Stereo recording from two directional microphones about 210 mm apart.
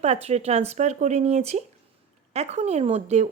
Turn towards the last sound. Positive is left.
turn(degrees=-30)  # may be behind; listen again after turning